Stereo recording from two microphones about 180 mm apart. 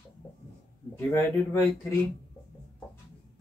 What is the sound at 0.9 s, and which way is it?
Speech, 15° left (ahead or behind).